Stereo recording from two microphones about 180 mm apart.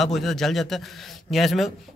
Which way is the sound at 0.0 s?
Centre (ahead or behind).